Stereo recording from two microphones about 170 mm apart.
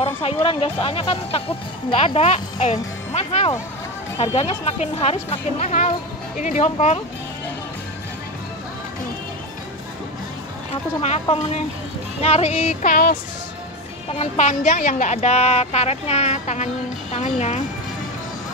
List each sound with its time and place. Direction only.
0.0 s a woman's voice: 35° left (ahead or behind)
11.0 s a woman's voice: 40° left (ahead or behind)
12.9 s speech: 60° left (ahead or behind)
14.1 s a woman's voice: 40° left (ahead or behind)